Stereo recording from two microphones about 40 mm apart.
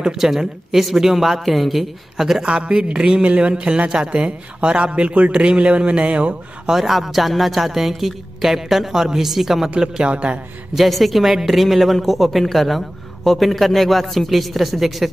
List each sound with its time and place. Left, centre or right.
0.2 s speech: centre
2.4 s speech: right
3.2 s a man's voice: right
6.7 s a woman's voice: centre
10.0 s speech: right
10.7 s a woman's voice: centre